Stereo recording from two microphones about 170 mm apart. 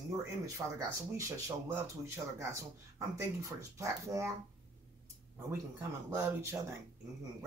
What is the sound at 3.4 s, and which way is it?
Speech, 15° right (ahead or behind).